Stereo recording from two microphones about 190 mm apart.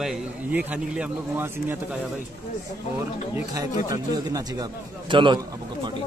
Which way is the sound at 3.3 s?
20° right (ahead or behind).